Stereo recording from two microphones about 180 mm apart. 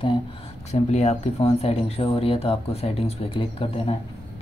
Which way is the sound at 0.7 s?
40° left (ahead or behind).